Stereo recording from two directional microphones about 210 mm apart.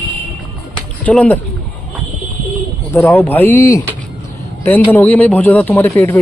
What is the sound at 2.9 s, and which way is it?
Speech, 10° left (ahead or behind).